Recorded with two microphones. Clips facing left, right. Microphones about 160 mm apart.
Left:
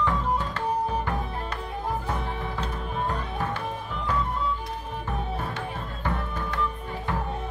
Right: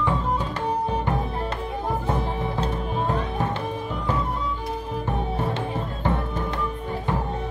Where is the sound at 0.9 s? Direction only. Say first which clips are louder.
Right 3 dB; 25° right (ahead or behind).